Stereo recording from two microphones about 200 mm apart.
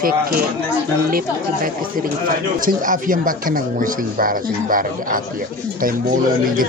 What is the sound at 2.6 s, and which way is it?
Speech, 45° right (ahead or behind).